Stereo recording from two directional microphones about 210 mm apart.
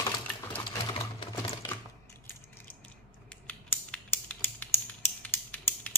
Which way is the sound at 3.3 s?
5° left (ahead or behind).